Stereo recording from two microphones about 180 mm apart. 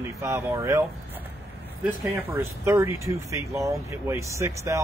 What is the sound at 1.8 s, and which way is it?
Speech, 15° right (ahead or behind).